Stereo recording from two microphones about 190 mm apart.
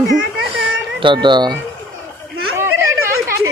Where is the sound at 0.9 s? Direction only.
25° right (ahead or behind).